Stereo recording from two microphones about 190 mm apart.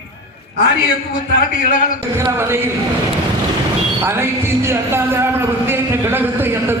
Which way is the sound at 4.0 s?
10° right (ahead or behind).